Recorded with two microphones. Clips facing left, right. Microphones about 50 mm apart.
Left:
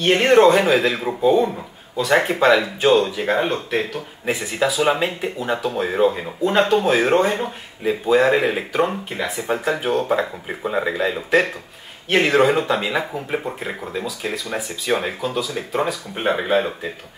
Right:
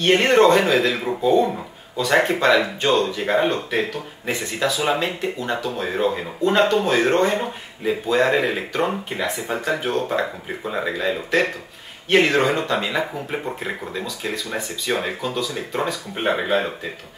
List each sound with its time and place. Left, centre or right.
0.0 s speech: centre